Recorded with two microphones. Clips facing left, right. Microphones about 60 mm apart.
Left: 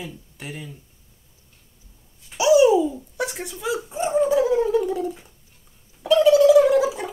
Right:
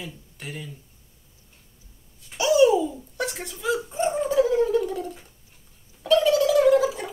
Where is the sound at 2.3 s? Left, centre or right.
Centre.